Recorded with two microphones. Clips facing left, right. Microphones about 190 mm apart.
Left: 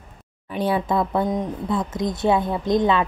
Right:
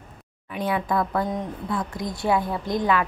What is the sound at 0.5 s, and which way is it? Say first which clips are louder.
A woman's voice: left 3 dB; 30° left (ahead or behind).